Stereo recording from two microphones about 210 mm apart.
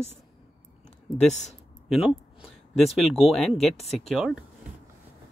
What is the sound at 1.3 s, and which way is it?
Speech, 35° left (ahead or behind).